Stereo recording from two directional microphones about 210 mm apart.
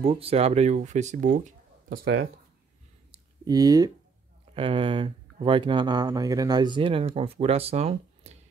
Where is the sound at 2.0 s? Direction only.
60° right (ahead or behind).